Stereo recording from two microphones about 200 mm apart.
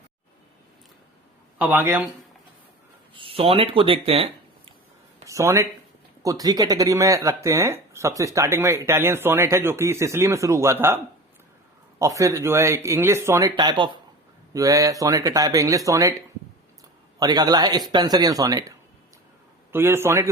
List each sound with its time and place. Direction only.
1.5 s speech: 10° right (ahead or behind)
3.2 s speech: 25° right (ahead or behind)
5.2 s speech: 15° right (ahead or behind)
17.2 s speech: 20° right (ahead or behind)
19.7 s speech: 10° right (ahead or behind)